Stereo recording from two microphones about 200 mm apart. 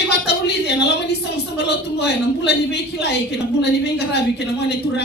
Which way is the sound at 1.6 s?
55° left (ahead or behind).